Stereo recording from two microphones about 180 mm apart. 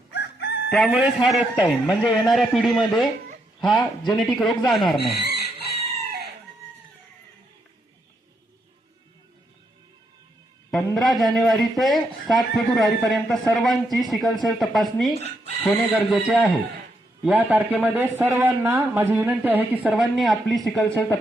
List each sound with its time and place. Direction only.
0.1 s chicken: 70° left (ahead or behind)
0.7 s speech: centre (ahead or behind)
5.2 s chicken: 65° right (ahead or behind)
10.7 s speech: centre (ahead or behind)
16.0 s speech: 5° right (ahead or behind)